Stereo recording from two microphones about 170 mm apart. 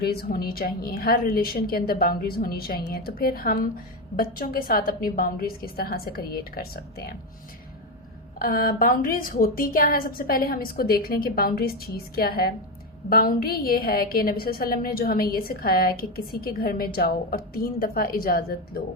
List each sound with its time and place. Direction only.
0.0 s a woman's voice: 65° left (ahead or behind)
8.4 s a woman's voice: 55° left (ahead or behind)